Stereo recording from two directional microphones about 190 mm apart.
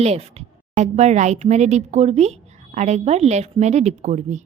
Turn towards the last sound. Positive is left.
turn(degrees=-40)  # may be behind; listen again after turning